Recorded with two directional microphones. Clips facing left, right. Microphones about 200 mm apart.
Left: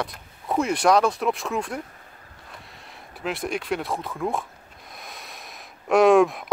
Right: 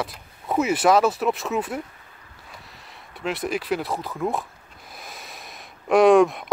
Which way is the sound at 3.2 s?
Centre (ahead or behind).